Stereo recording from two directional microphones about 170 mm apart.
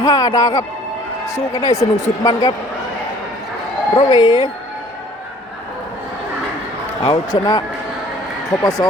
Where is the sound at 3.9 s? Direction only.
25° left (ahead or behind).